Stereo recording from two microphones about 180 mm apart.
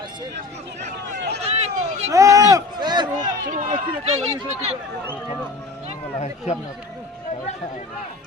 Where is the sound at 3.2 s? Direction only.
45° right (ahead or behind).